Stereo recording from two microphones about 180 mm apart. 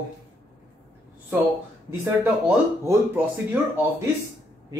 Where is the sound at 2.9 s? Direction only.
10° right (ahead or behind).